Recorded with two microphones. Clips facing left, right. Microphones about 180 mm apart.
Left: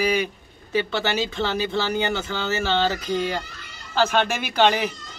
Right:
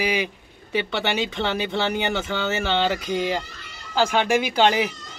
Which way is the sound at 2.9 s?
15° right (ahead or behind).